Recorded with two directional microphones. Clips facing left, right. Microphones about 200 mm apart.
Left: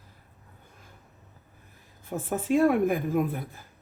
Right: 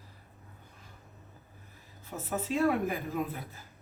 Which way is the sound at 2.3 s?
50° left (ahead or behind).